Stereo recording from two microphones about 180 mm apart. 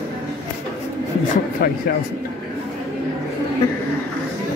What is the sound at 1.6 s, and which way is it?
Speech, 55° left (ahead or behind).